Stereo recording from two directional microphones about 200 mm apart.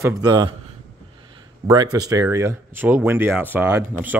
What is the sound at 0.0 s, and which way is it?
Speech, 15° right (ahead or behind).